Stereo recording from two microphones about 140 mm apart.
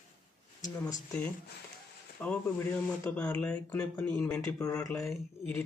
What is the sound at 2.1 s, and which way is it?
Speech, 10° left (ahead or behind).